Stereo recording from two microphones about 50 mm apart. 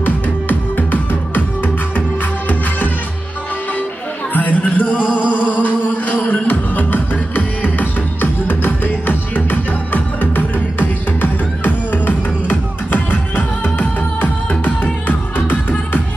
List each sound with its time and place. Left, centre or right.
0.0 s music: left
4.3 s chatter: left
5.3 s music: left